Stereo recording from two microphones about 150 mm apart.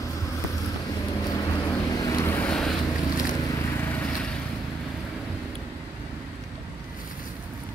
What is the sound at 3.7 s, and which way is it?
Vehicle, 15° left (ahead or behind).